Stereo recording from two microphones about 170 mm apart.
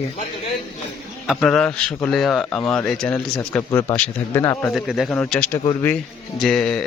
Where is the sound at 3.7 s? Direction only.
20° left (ahead or behind).